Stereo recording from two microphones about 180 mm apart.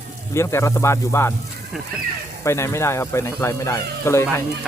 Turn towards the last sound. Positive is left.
turn(degrees=15)  # may be behind; listen again after turning